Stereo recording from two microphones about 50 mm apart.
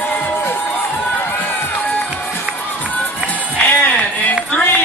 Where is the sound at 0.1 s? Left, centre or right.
Left.